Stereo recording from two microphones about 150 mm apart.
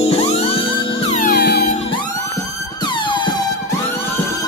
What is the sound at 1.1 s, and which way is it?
Music, 80° left.